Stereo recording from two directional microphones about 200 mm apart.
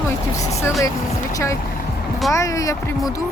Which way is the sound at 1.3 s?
15° left (ahead or behind).